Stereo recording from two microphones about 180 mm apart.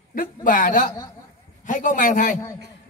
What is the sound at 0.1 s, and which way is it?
A man's voice, 50° left (ahead or behind).